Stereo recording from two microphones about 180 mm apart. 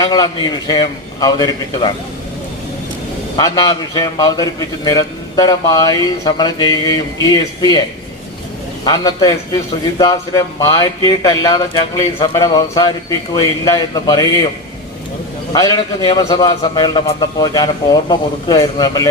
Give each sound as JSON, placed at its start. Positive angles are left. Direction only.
{"t": 0.0, "sound": "a man's voice", "side_deg": 20}
{"t": 3.3, "sound": "a man's voice", "side_deg": 20}
{"t": 8.8, "sound": "a man's voice", "side_deg": 20}
{"t": 15.5, "sound": "a man's voice", "side_deg": 25}